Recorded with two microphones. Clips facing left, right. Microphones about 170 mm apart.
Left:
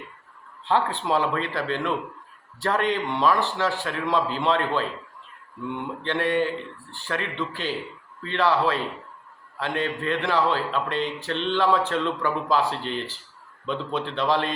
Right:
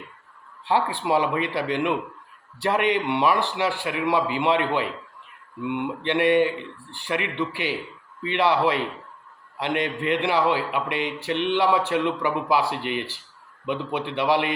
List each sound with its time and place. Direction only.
0.6 s a man's voice: 10° right (ahead or behind)